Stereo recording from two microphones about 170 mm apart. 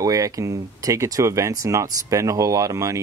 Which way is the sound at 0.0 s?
20° right (ahead or behind).